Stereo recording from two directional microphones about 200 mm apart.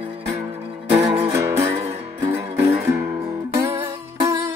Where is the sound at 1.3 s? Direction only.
15° right (ahead or behind).